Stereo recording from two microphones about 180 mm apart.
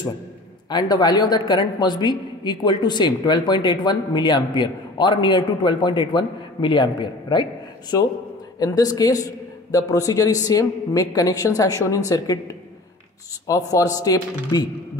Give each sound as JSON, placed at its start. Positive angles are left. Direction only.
{"t": 0.7, "sound": "a woman's voice", "side_deg": 25}